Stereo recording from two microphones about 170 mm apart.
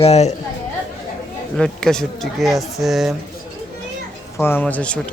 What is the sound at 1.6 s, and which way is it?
Speech, 5° left (ahead or behind).